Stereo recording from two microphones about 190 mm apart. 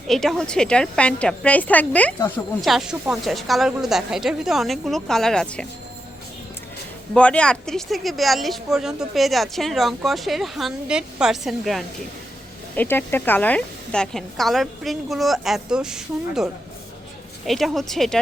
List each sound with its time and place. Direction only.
0.1 s speech: centre (ahead or behind)
2.1 s speech: 20° left (ahead or behind)
2.6 s speech: centre (ahead or behind)
7.1 s speech: 5° left (ahead or behind)